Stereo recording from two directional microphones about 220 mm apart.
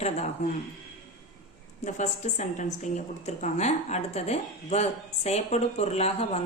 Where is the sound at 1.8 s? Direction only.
35° left (ahead or behind).